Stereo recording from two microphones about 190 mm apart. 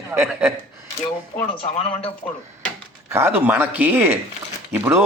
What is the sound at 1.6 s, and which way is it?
Speech, 30° left (ahead or behind).